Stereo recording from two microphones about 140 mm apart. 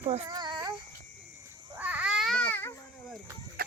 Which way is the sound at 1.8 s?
10° right (ahead or behind).